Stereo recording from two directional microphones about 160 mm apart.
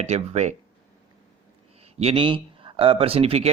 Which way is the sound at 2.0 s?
35° right (ahead or behind).